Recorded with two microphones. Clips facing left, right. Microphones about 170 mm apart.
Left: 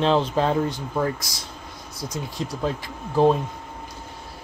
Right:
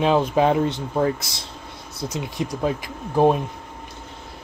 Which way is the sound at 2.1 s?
20° right (ahead or behind).